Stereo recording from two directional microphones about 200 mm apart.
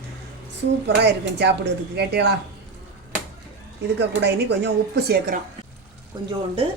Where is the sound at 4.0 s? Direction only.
60° right (ahead or behind).